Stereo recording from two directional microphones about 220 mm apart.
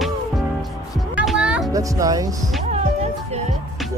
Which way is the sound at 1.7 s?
15° right (ahead or behind).